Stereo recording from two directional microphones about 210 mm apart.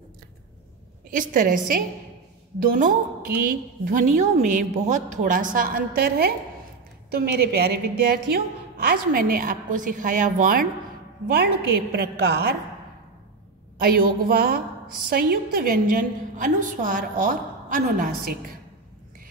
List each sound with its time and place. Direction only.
1.1 s a woman's voice: 40° right (ahead or behind)
13.7 s a woman's voice: 45° right (ahead or behind)